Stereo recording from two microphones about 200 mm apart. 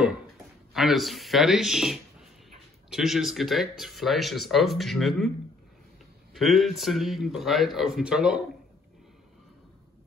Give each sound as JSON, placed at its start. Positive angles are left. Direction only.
{"t": 0.7, "sound": "speech", "side_deg": 0}
{"t": 6.3, "sound": "speech", "side_deg": 0}